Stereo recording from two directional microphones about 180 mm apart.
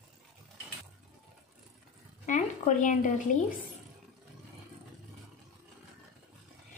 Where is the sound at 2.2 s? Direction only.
45° left (ahead or behind).